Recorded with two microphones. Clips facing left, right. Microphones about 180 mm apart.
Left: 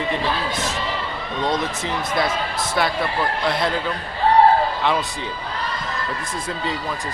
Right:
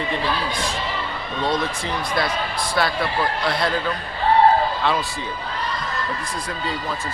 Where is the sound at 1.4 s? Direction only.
20° left (ahead or behind).